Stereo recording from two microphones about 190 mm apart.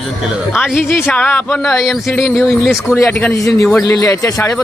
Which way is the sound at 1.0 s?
5° left (ahead or behind).